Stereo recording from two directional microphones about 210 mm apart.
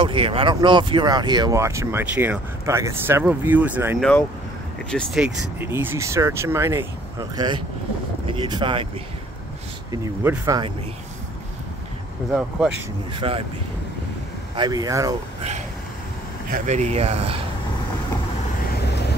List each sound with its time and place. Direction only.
0.0 s speech: 25° right (ahead or behind)
9.8 s speech: 15° right (ahead or behind)
12.3 s speech: 5° right (ahead or behind)
13.1 s speech: 25° right (ahead or behind)
14.5 s speech: 20° right (ahead or behind)
16.5 s speech: 35° right (ahead or behind)
18.7 s vehicle: 50° left (ahead or behind)